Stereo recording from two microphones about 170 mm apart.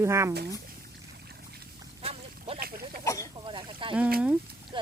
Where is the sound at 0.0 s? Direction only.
15° right (ahead or behind).